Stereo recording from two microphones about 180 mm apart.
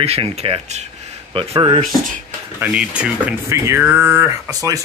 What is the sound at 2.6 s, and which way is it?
Speech, 5° right (ahead or behind).